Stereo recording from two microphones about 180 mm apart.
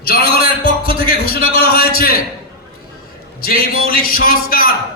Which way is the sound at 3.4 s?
55° left (ahead or behind).